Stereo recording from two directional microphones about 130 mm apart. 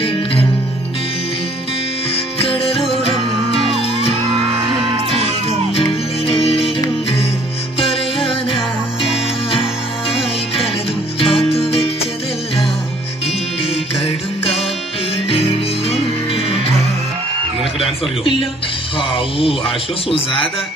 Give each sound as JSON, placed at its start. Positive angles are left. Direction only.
{"t": 0.0, "sound": "music", "side_deg": 45}
{"t": 2.3, "sound": "music", "side_deg": 50}
{"t": 4.3, "sound": "music", "side_deg": -40}
{"t": 5.8, "sound": "music", "side_deg": 50}
{"t": 7.8, "sound": "music", "side_deg": 45}
{"t": 11.1, "sound": "music", "side_deg": 50}
{"t": 14.0, "sound": "music", "side_deg": 50}
{"t": 17.7, "sound": "music", "side_deg": 45}
{"t": 18.9, "sound": "speech", "side_deg": 45}